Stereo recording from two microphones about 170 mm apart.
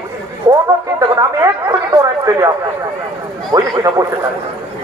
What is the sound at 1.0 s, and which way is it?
Chatter, 20° right (ahead or behind).